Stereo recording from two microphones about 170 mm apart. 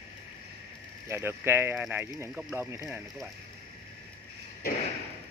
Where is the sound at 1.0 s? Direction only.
15° right (ahead or behind).